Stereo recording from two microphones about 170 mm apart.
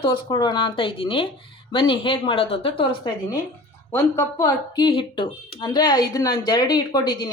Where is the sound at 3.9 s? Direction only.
15° left (ahead or behind).